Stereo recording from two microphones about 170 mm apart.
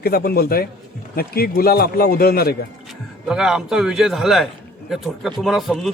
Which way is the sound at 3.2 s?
5° right (ahead or behind).